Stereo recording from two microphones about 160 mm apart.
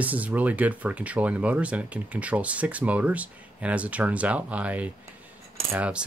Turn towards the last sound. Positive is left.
turn(degrees=-10)  # may be behind; listen again after turning